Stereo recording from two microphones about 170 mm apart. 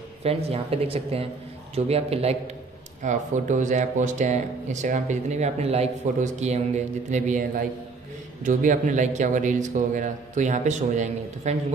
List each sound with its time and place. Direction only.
0.2 s speech: 35° right (ahead or behind)
8.5 s speech: 45° right (ahead or behind)